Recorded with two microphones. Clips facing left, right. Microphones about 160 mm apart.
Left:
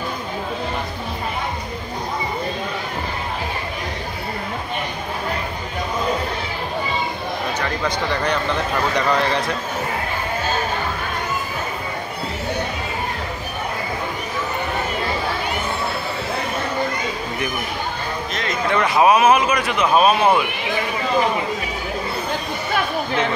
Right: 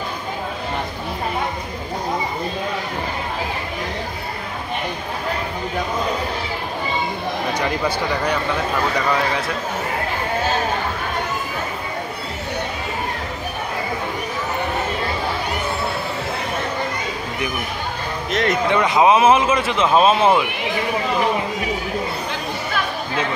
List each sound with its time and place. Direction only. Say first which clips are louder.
7.5 s speech: right 2 dB; 10° right (ahead or behind)
18.3 s speech: right 10 dB; 70° right (ahead or behind)
18.7 s speech: left 1 dB; 20° right (ahead or behind)